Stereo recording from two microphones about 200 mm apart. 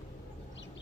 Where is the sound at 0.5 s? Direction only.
65° left (ahead or behind).